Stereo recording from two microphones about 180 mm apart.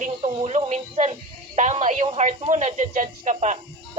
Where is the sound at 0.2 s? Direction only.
35° right (ahead or behind).